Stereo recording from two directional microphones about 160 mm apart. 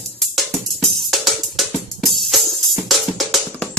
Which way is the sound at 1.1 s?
Centre (ahead or behind).